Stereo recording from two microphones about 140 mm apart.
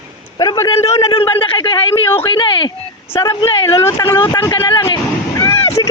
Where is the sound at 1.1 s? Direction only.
35° left (ahead or behind).